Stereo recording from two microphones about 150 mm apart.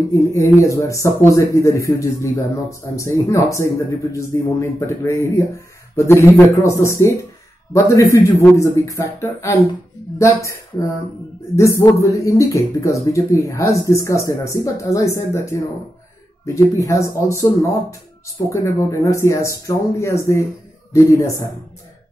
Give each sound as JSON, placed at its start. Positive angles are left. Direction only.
{"t": 0.1, "sound": "a man's voice", "side_deg": 20}
{"t": 11.8, "sound": "a man's voice", "side_deg": 20}